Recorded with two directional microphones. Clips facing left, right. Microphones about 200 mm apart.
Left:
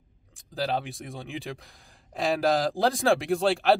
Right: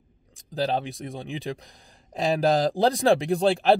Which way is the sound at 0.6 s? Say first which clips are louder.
Right 3 dB; 20° right (ahead or behind).